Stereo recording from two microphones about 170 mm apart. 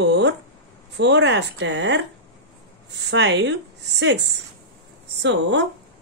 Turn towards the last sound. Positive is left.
turn(degrees=-90)